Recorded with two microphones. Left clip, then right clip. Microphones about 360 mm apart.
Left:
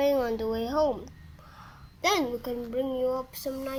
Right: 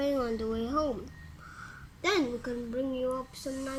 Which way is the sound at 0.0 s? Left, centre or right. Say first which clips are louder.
Left 5 dB; centre.